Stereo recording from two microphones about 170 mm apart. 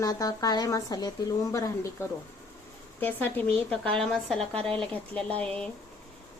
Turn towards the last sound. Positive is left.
turn(degrees=5)  # may be behind; listen again after turning